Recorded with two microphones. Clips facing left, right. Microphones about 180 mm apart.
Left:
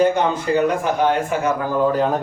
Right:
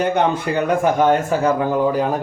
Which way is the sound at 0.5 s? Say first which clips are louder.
Left 1 dB; 45° right (ahead or behind).